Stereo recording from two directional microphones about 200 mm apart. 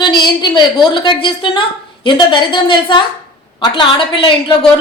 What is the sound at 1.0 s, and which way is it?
A man's voice, 25° left (ahead or behind).